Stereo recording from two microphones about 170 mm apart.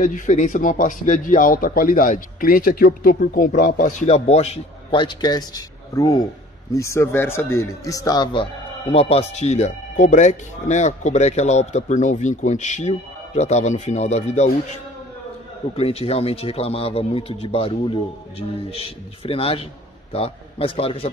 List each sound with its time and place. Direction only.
0.0 s a man's voice: 50° left (ahead or behind)
15.7 s a man's voice: 35° left (ahead or behind)